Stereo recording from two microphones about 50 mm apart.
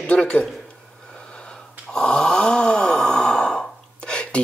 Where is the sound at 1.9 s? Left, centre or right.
Centre.